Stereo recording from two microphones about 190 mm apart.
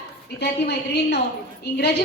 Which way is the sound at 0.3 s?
60° left (ahead or behind).